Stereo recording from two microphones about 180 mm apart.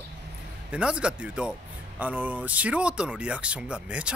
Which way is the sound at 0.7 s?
5° right (ahead or behind).